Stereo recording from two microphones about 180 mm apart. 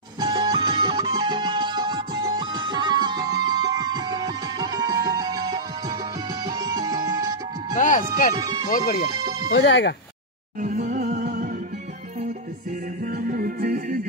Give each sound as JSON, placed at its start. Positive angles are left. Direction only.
{"t": 0.2, "sound": "music", "side_deg": -25}
{"t": 7.7, "sound": "music", "side_deg": 45}
{"t": 8.4, "sound": "music", "side_deg": -20}
{"t": 8.6, "sound": "speech", "side_deg": 50}
{"t": 9.5, "sound": "speech", "side_deg": 85}
{"t": 10.6, "sound": "music", "side_deg": -45}
{"t": 13.0, "sound": "music", "side_deg": -55}